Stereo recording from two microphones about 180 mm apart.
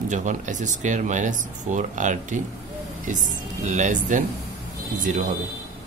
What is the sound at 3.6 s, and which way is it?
Speech, 45° right (ahead or behind).